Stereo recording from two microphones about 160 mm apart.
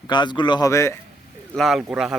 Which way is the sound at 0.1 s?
30° left (ahead or behind).